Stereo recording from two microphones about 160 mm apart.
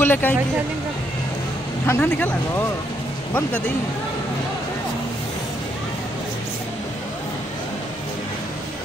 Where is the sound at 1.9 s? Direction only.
15° left (ahead or behind).